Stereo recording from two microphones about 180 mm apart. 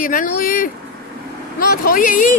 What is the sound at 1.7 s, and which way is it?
Speech, 55° left (ahead or behind).